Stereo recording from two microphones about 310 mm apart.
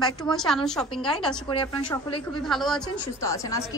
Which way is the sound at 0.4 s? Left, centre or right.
Centre.